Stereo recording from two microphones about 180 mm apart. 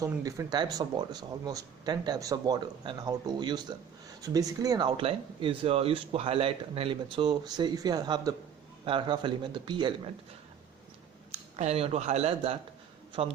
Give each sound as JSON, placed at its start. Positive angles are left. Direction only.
{"t": 0.0, "sound": "speech", "side_deg": -20}
{"t": 11.5, "sound": "speech", "side_deg": -35}